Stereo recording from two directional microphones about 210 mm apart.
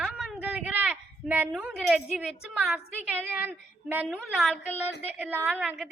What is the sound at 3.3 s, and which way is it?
A woman's voice, 10° right (ahead or behind).